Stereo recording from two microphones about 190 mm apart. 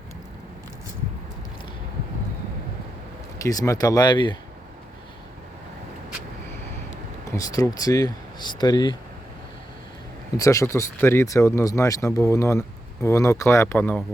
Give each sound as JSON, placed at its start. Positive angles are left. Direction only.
{"t": 3.4, "sound": "speech", "side_deg": 20}
{"t": 7.3, "sound": "speech", "side_deg": 20}
{"t": 10.3, "sound": "speech", "side_deg": 15}